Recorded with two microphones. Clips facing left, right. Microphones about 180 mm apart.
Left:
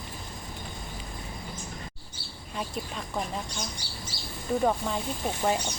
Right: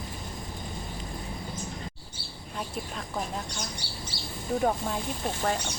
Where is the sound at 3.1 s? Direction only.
5° left (ahead or behind).